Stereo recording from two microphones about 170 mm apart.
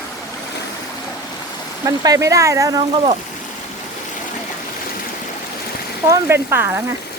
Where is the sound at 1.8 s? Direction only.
20° right (ahead or behind).